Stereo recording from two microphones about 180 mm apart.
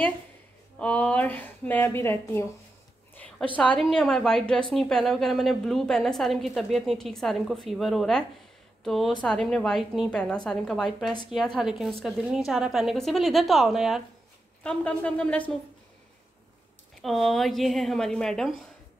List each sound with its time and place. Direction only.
0.7 s speech: 5° left (ahead or behind)
3.2 s a sound: 5° left (ahead or behind)
3.5 s a woman's voice: 5° left (ahead or behind)
17.0 s a woman's voice: centre (ahead or behind)